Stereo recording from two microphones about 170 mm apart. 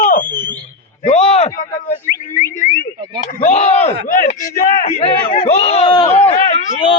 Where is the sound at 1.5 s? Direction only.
45° left (ahead or behind).